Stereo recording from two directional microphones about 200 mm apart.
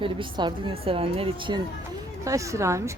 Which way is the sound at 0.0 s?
25° right (ahead or behind).